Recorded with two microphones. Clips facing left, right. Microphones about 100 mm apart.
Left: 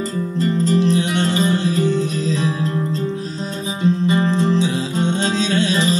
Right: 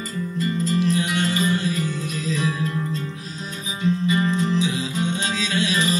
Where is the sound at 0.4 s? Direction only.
30° left (ahead or behind).